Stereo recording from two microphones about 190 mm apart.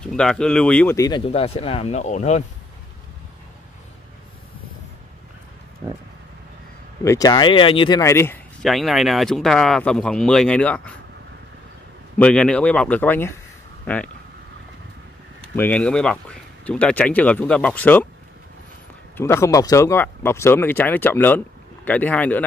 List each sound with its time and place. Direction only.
0.0 s speech: 5° left (ahead or behind)
0.9 s speech: 20° left (ahead or behind)
7.1 s speech: 20° left (ahead or behind)
8.0 s speech: 15° left (ahead or behind)
8.6 s speech: centre (ahead or behind)
12.2 s speech: 5° left (ahead or behind)
15.5 s speech: 10° left (ahead or behind)
19.1 s speech: 15° left (ahead or behind)